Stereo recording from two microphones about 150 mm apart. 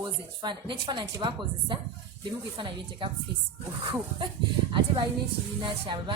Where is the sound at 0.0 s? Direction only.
30° right (ahead or behind).